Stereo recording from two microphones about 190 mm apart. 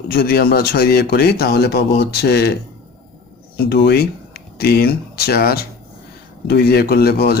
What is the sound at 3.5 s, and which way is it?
A man's voice, 55° left (ahead or behind).